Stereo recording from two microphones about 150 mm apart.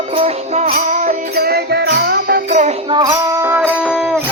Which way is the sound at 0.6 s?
75° right (ahead or behind).